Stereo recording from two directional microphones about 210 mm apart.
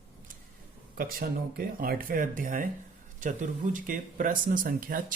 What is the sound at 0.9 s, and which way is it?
Speech, 45° right (ahead or behind).